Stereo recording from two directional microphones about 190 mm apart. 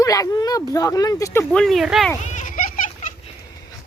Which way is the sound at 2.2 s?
40° left (ahead or behind).